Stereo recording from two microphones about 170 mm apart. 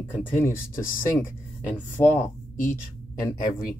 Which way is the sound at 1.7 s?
10° left (ahead or behind).